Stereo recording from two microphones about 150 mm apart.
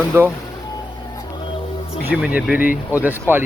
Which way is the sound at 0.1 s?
15° right (ahead or behind).